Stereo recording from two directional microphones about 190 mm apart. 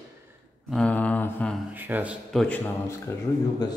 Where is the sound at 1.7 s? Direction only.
10° right (ahead or behind).